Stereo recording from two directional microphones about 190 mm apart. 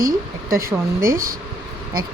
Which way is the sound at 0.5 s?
15° right (ahead or behind).